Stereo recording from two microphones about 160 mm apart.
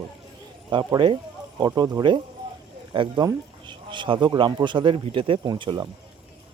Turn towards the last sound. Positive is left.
turn(degrees=-30)  # may be behind; listen again after turning